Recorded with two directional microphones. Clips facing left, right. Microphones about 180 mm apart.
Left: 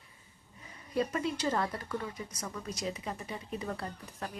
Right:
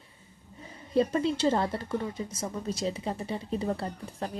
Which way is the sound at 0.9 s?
30° right (ahead or behind).